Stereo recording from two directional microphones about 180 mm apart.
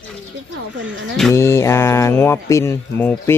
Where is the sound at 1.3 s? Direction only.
15° left (ahead or behind).